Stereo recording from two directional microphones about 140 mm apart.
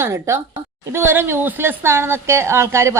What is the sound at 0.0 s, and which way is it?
A woman's voice, 20° right (ahead or behind).